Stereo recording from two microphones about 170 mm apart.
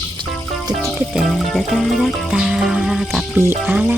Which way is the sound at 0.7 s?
Centre (ahead or behind).